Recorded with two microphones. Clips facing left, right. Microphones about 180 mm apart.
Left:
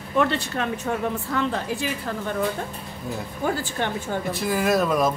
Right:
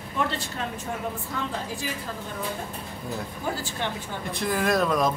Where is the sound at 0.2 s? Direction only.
70° left (ahead or behind).